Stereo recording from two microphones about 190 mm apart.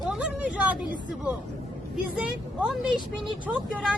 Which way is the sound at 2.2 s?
5° right (ahead or behind).